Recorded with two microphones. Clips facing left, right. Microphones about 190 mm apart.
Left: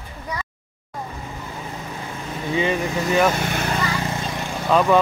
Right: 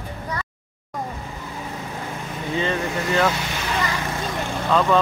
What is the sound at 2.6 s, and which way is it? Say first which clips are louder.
Speech: left 2 dB; 15° left (ahead or behind).